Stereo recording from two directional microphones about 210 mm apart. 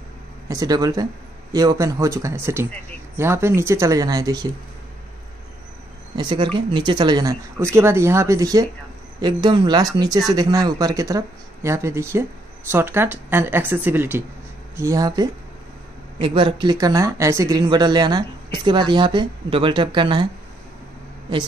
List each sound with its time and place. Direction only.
0.5 s speech: 15° right (ahead or behind)
6.1 s speech: 20° right (ahead or behind)